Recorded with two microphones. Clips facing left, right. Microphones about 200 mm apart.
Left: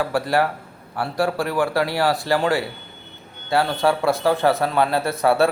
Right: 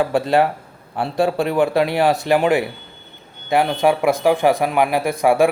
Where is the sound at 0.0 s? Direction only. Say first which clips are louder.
Right 4 dB; 20° right (ahead or behind).